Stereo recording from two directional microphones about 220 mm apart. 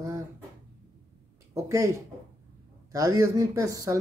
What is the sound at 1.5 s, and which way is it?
A woman's voice, 15° right (ahead or behind).